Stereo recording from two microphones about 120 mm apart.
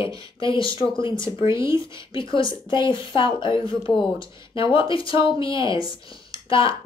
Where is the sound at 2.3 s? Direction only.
45° left (ahead or behind).